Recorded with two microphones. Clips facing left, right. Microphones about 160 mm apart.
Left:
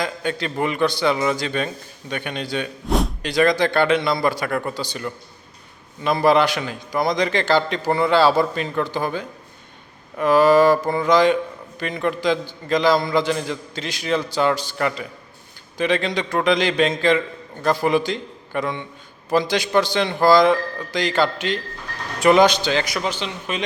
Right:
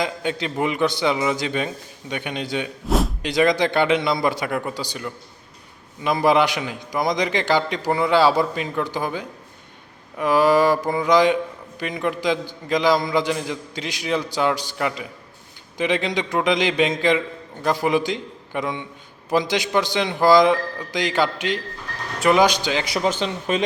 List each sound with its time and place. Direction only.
0.0 s a man's voice: 20° right (ahead or behind)
2.8 s slam: centre (ahead or behind)
3.2 s a man's voice: 20° right (ahead or behind)
23.0 s speech: 45° right (ahead or behind)